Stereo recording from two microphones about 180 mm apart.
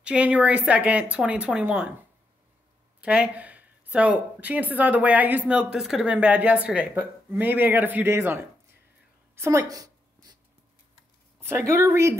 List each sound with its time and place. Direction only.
0.0 s speech: 5° right (ahead or behind)
3.0 s speech: 5° right (ahead or behind)
9.3 s a sound: 15° right (ahead or behind)
11.3 s speech: 15° right (ahead or behind)